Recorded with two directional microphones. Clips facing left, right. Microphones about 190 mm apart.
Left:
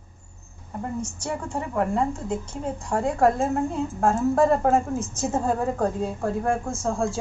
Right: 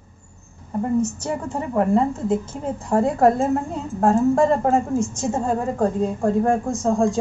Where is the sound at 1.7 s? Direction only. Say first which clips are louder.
Right 6 dB; 30° right (ahead or behind).